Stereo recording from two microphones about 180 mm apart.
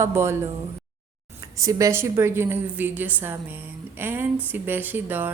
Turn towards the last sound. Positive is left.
turn(degrees=-10)  # may be behind; listen again after turning